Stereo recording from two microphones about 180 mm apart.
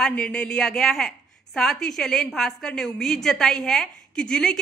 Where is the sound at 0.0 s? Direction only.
5° left (ahead or behind).